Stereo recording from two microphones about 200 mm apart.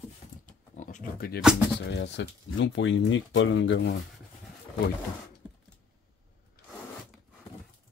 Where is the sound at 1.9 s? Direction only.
60° left (ahead or behind).